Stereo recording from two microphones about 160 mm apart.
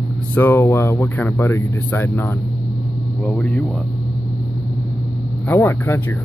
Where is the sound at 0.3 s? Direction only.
15° left (ahead or behind).